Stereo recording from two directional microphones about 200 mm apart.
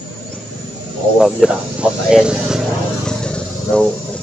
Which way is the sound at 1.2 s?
5° right (ahead or behind).